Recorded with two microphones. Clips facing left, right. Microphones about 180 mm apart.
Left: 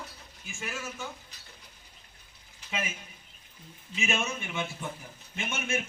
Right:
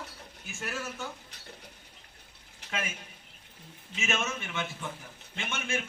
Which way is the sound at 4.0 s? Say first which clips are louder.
Left 1 dB; 10° left (ahead or behind).